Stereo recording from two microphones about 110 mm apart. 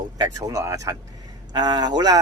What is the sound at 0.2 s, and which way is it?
Speech, 30° right (ahead or behind).